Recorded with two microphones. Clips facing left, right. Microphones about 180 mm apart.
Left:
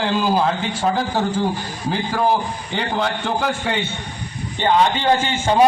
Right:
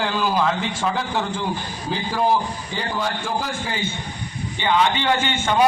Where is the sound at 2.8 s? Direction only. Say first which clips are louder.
Left 4 dB; 65° left (ahead or behind).